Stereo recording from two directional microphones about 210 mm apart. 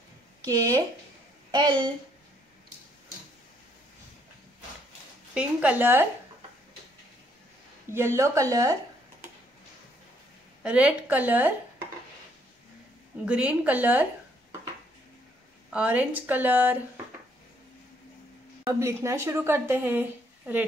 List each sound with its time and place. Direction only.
0.5 s a woman's voice: 15° right (ahead or behind)
5.3 s a woman's voice: 5° right (ahead or behind)
7.9 s a woman's voice: 10° right (ahead or behind)
10.6 s a woman's voice: 5° right (ahead or behind)
13.2 s a woman's voice: 5° right (ahead or behind)
15.7 s a woman's voice: 5° right (ahead or behind)
18.7 s a woman's voice: 15° right (ahead or behind)